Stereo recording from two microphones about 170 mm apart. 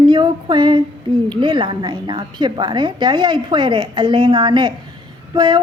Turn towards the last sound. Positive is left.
turn(degrees=-25)  # may be behind; listen again after turning